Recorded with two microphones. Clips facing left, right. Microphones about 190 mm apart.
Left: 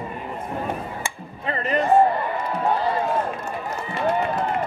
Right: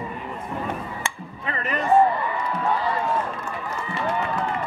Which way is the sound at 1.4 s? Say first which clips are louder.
Left 4 dB; 35° left (ahead or behind).